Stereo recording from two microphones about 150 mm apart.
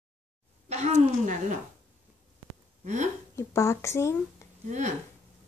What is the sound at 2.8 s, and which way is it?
Speech, 55° right (ahead or behind).